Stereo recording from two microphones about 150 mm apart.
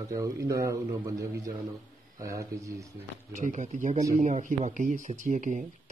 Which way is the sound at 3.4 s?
55° right (ahead or behind).